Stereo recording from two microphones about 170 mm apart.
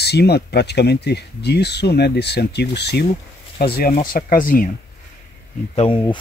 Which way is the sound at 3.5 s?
65° left (ahead or behind).